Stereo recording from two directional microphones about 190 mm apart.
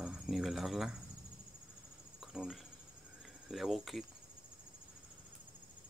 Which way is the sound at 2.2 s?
5° right (ahead or behind).